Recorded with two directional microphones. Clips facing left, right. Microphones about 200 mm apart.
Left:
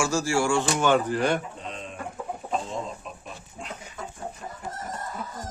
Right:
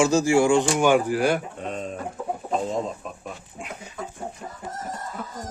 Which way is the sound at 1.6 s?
45° right (ahead or behind).